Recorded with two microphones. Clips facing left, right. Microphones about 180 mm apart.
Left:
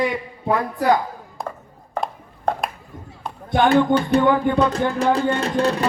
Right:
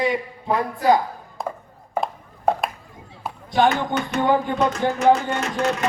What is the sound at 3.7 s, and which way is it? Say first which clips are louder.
Speech: left 8 dB; 35° left (ahead or behind).